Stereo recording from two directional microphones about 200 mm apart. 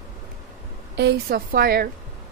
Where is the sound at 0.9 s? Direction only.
55° right (ahead or behind).